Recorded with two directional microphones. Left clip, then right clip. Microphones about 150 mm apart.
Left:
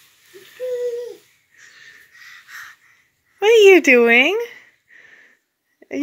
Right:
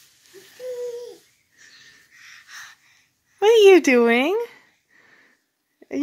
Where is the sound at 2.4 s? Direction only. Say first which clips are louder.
Left 4 dB; 25° right (ahead or behind).